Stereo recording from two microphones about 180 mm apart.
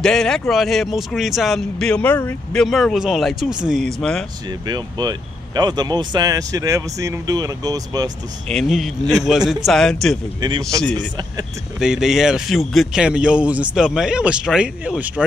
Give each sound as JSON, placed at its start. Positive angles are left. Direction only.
{"t": 0.0, "sound": "speech", "side_deg": 5}
{"t": 4.5, "sound": "speech", "side_deg": -20}
{"t": 8.5, "sound": "speech", "side_deg": 0}
{"t": 11.0, "sound": "speech", "side_deg": -25}
{"t": 11.8, "sound": "speech", "side_deg": -5}